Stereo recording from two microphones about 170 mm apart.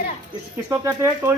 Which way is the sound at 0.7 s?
15° right (ahead or behind).